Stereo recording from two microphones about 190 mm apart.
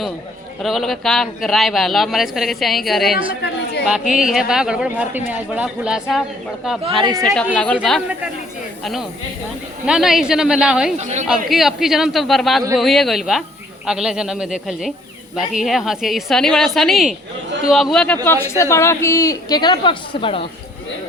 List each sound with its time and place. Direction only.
0.6 s speech: centre (ahead or behind)
10.9 s speech: 35° right (ahead or behind)
11.3 s a woman's voice: centre (ahead or behind); by 20.5 s 30° left (ahead or behind)